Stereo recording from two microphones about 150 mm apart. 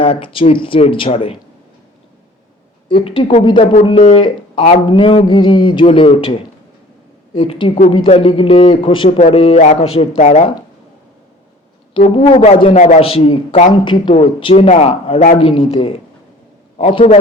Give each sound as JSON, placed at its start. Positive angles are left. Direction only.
{"t": 0.0, "sound": "speech", "side_deg": 35}
{"t": 2.9, "sound": "speech", "side_deg": 40}
{"t": 7.3, "sound": "speech", "side_deg": 40}
{"t": 9.0, "sound": "a man's voice", "side_deg": 45}
{"t": 12.1, "sound": "speech", "side_deg": 40}
{"t": 12.7, "sound": "a man's voice", "side_deg": 50}